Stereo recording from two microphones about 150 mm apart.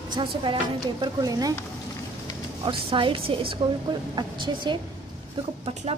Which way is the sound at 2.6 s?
35° right (ahead or behind).